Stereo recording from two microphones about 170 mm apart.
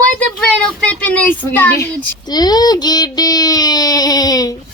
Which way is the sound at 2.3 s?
25° left (ahead or behind).